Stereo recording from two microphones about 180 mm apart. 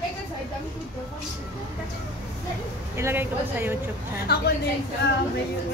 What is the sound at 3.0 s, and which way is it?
Speech, 10° right (ahead or behind).